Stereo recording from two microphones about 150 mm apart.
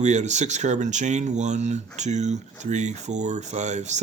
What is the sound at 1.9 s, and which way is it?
Speech, 50° right (ahead or behind).